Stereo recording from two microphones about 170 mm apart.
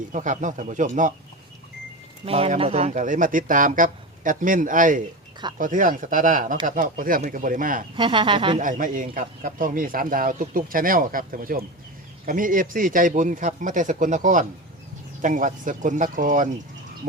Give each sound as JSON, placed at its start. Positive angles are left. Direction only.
{"t": 0.1, "sound": "speech", "side_deg": -45}
{"t": 2.2, "sound": "speech", "side_deg": -35}
{"t": 7.9, "sound": "speech", "side_deg": -30}
{"t": 8.5, "sound": "a man's voice", "side_deg": -50}